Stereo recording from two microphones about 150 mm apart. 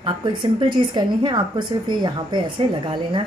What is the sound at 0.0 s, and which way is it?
A woman's voice, 30° right (ahead or behind).